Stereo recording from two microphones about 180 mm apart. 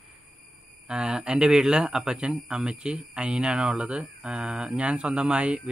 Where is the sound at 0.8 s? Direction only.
5° right (ahead or behind).